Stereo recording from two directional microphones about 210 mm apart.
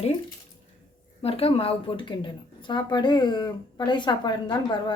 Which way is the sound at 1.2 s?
25° left (ahead or behind).